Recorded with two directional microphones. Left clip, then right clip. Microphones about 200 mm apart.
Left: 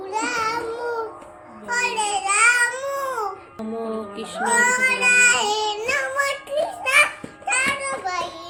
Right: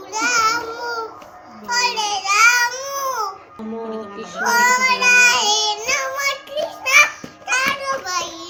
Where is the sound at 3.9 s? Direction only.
10° left (ahead or behind).